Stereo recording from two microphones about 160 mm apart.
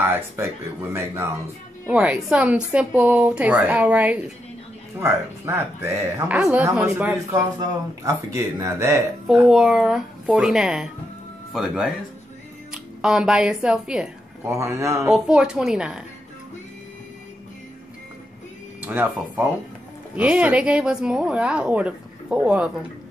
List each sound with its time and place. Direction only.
0.0 s speech: 15° right (ahead or behind)
1.9 s a woman's voice: 10° right (ahead or behind)
9.3 s speech: 5° right (ahead or behind)
14.5 s a woman's voice: 15° right (ahead or behind)
15.0 s speech: 5° right (ahead or behind)
18.8 s a woman's voice: 10° right (ahead or behind)